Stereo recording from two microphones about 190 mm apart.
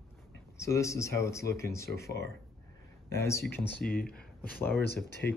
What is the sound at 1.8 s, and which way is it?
Speech, 55° left (ahead or behind).